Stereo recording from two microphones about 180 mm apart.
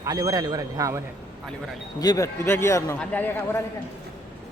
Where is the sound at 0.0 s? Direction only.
20° right (ahead or behind).